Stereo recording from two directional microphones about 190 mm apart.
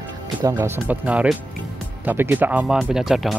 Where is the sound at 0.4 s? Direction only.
15° right (ahead or behind).